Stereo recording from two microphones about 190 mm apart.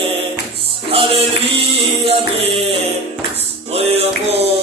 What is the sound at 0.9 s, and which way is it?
Music, 30° right (ahead or behind).